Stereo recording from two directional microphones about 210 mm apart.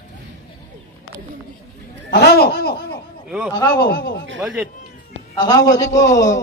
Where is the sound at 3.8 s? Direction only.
50° left (ahead or behind).